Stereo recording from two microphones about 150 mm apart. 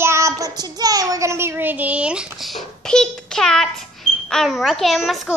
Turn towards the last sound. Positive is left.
turn(degrees=0)  # may be behind; listen again after turning